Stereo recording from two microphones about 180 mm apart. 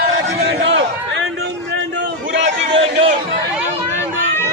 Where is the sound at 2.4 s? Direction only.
30° right (ahead or behind).